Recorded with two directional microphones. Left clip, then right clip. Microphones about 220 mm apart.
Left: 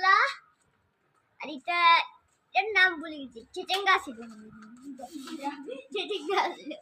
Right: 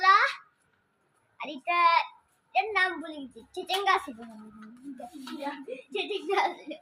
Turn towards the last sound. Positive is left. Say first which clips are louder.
# right 1 dB
turn(degrees=20)  # may be behind; listen again after turning